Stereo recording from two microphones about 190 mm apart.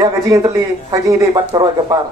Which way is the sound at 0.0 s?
15° right (ahead or behind).